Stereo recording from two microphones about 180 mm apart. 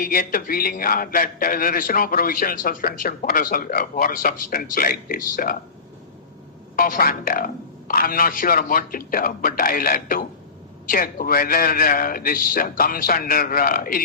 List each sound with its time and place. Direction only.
0.0 s a man's voice: 50° left (ahead or behind)
6.7 s a man's voice: 55° left (ahead or behind)